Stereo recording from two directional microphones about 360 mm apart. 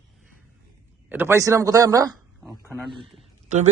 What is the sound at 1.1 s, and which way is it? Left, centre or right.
A man's voice, centre.